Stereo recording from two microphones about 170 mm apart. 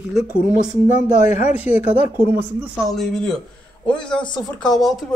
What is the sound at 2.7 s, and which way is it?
Speech, centre (ahead or behind).